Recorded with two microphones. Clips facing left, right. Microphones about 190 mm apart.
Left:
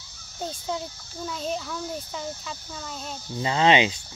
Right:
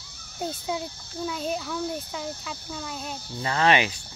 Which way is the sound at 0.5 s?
5° right (ahead or behind).